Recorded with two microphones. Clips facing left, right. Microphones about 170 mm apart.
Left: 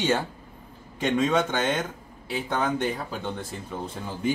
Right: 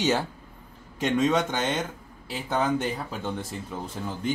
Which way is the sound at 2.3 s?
Centre (ahead or behind).